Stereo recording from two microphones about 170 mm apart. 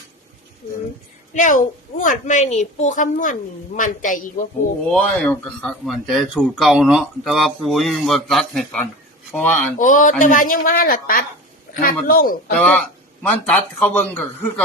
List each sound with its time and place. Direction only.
1.3 s a woman's voice: 50° left (ahead or behind)
4.9 s a man's voice: 5° left (ahead or behind)
9.7 s a woman's voice: 50° left (ahead or behind)
12.5 s a man's voice: 5° left (ahead or behind)